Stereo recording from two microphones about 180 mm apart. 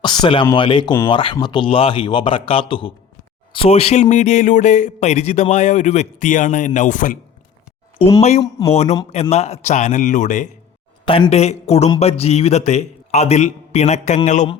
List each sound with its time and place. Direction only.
0.0 s a sound: 25° left (ahead or behind)
0.5 s a man's voice: 25° left (ahead or behind); by 7.2 s 45° left (ahead or behind)
8.2 s speech: 35° left (ahead or behind)
11.0 s speech: 30° left (ahead or behind)